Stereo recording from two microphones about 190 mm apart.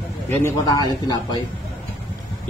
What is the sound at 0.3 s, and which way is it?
A man's voice, 15° left (ahead or behind).